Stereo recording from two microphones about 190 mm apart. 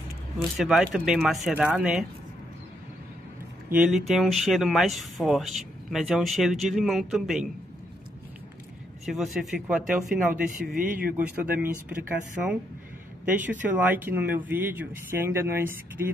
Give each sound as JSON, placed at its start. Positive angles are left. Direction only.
{"t": 0.6, "sound": "speech", "side_deg": 0}
{"t": 3.7, "sound": "speech", "side_deg": -5}
{"t": 9.0, "sound": "speech", "side_deg": 0}
{"t": 10.3, "sound": "speech", "side_deg": -45}
{"t": 11.1, "sound": "speech", "side_deg": -10}